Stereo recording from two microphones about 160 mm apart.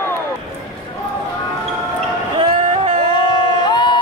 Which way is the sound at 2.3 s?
35° right (ahead or behind).